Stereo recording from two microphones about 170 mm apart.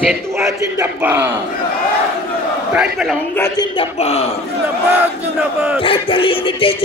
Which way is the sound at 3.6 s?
35° left (ahead or behind).